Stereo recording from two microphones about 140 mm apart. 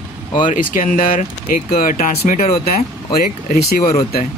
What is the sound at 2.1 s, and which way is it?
Speech, 50° left (ahead or behind).